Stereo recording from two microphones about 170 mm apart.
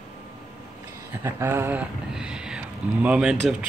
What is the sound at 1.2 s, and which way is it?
Speech, 15° right (ahead or behind).